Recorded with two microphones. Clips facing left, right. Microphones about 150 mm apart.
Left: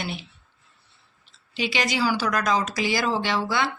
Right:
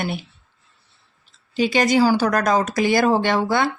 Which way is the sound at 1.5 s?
45° right (ahead or behind).